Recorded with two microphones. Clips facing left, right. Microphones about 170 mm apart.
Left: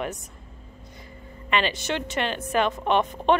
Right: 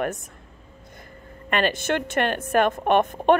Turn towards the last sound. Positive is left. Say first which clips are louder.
# right 3 dB
turn(degrees=-50)  # may be behind; listen again after turning